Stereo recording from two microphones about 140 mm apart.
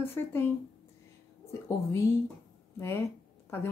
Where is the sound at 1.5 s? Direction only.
20° left (ahead or behind).